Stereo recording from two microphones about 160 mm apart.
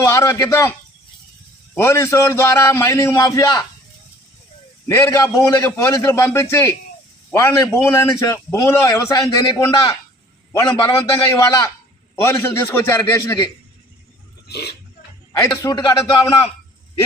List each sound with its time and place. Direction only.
0.0 s a man's voice: 15° left (ahead or behind)
1.7 s a man's voice: 15° left (ahead or behind)
4.9 s a man's voice: 20° left (ahead or behind)
12.2 s a man's voice: 15° left (ahead or behind)
14.5 s speech: 80° left
15.6 s a man's voice: 25° left (ahead or behind)